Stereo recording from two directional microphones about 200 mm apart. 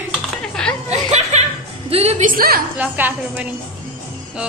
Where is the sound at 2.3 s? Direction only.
50° right (ahead or behind).